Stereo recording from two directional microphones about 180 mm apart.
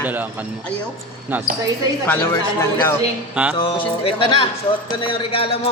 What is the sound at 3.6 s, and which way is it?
Speech, 30° left (ahead or behind).